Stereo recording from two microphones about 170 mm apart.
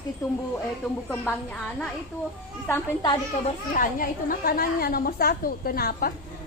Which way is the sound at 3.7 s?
55° left (ahead or behind).